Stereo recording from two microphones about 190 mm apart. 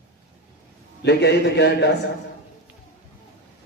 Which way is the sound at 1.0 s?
65° left (ahead or behind).